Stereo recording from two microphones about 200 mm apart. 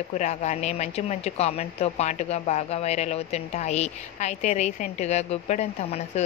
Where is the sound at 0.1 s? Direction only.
35° left (ahead or behind).